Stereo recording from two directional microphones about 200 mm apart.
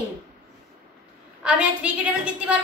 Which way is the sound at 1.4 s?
5° right (ahead or behind).